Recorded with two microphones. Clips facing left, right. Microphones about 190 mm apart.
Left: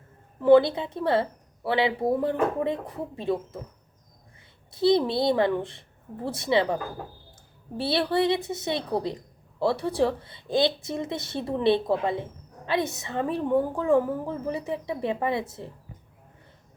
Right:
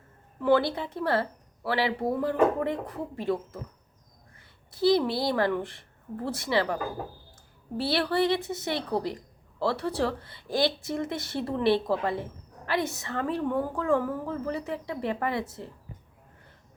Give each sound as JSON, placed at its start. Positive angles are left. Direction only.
{"t": 0.3, "sound": "speech", "side_deg": 20}
{"t": 4.7, "sound": "speech", "side_deg": 20}
{"t": 7.8, "sound": "speech", "side_deg": 20}